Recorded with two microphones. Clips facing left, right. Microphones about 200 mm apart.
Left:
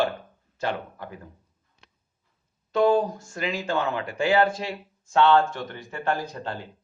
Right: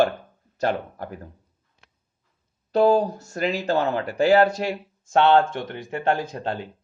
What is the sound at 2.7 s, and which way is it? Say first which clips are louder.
Speech: right 2 dB; 40° right (ahead or behind).